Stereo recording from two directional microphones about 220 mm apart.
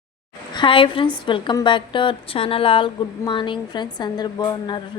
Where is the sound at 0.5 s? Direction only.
20° left (ahead or behind).